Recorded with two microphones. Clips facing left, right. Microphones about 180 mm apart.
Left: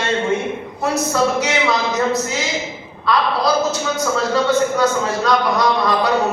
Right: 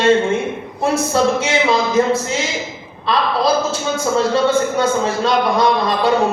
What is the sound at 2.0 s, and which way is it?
A man's voice, 25° right (ahead or behind).